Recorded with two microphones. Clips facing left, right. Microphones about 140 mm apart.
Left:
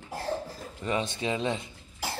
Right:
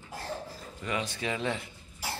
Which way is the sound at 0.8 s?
25° left (ahead or behind).